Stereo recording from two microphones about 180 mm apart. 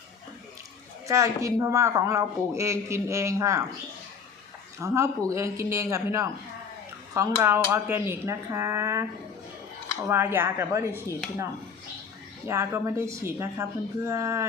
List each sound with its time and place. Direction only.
1.0 s speech: 15° right (ahead or behind)
4.8 s speech: 15° right (ahead or behind)
10.1 s speech: 15° right (ahead or behind)
12.5 s speech: 15° right (ahead or behind)